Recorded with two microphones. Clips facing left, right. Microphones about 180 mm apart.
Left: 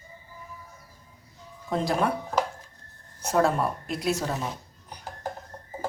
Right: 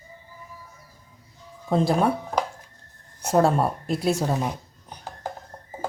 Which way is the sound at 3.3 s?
30° right (ahead or behind).